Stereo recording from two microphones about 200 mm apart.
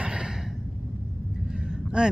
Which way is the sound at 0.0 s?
5° right (ahead or behind).